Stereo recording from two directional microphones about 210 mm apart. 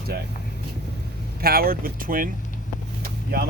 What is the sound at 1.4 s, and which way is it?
Speech, 45° right (ahead or behind).